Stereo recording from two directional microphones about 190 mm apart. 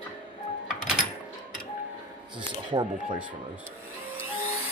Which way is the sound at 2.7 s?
25° right (ahead or behind).